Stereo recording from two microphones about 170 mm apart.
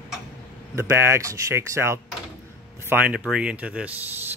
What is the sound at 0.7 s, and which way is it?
Speech, 15° right (ahead or behind).